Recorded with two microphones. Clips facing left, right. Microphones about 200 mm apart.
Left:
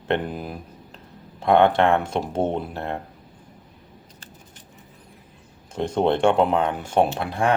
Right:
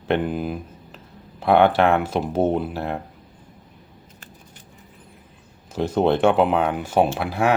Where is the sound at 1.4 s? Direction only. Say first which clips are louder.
Right 1 dB; 5° right (ahead or behind).